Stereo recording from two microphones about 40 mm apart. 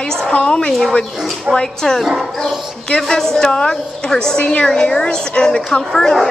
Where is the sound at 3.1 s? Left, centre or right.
Centre.